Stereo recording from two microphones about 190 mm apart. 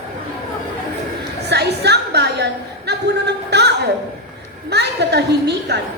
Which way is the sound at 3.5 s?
60° right (ahead or behind).